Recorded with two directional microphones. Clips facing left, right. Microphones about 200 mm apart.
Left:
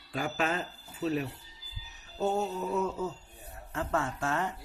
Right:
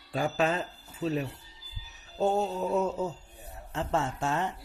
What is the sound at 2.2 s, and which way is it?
Speech, 30° right (ahead or behind).